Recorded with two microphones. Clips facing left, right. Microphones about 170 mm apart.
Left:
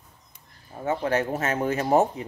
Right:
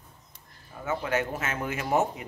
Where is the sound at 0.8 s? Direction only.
35° left (ahead or behind).